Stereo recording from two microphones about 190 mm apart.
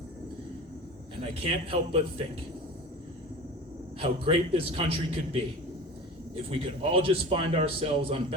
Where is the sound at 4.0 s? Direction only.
30° right (ahead or behind).